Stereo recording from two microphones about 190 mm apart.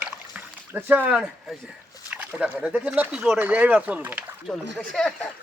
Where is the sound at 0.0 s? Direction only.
10° right (ahead or behind).